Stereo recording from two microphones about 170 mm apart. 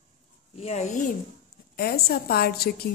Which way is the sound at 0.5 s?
40° left (ahead or behind).